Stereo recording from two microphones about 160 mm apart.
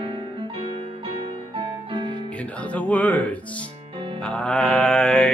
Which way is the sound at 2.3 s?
10° left (ahead or behind).